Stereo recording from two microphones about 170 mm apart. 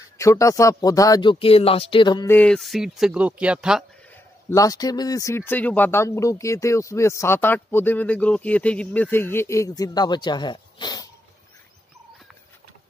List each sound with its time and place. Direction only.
0.2 s speech: 20° left (ahead or behind)
2.2 s speech: 10° left (ahead or behind)
4.1 s speech: 15° left (ahead or behind)